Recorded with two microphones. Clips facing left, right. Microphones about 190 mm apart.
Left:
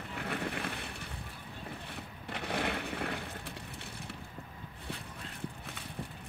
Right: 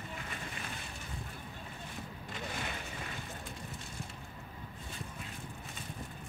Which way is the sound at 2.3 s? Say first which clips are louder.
Left 7 dB; 65° left (ahead or behind).